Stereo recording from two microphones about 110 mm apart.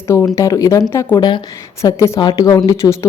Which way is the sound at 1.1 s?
40° left (ahead or behind).